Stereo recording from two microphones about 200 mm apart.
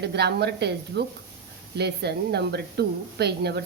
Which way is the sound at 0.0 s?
55° right (ahead or behind).